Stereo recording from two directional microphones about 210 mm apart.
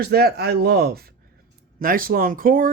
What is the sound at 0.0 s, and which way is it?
Speech, 50° right (ahead or behind).